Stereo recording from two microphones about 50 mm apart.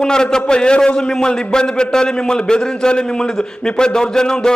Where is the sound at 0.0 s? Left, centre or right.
Centre.